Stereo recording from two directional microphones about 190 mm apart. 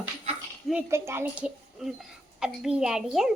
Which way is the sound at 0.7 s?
10° right (ahead or behind).